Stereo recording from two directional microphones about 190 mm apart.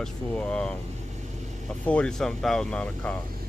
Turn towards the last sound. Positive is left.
turn(degrees=5)  # may be behind; listen again after turning